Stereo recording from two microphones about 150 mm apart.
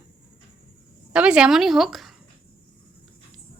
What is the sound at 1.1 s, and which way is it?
Speech, 5° right (ahead or behind).